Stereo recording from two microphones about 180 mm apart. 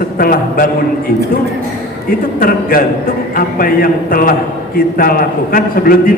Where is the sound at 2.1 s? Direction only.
55° left (ahead or behind).